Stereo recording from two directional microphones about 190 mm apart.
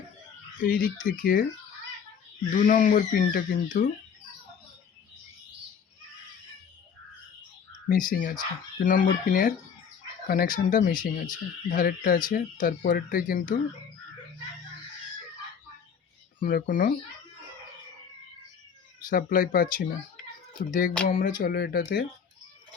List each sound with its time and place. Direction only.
0.6 s speech: 50° left (ahead or behind)
2.5 s speech: 45° left (ahead or behind)
7.9 s speech: 45° left (ahead or behind)
16.4 s speech: 45° left (ahead or behind)
19.0 s speech: 45° left (ahead or behind)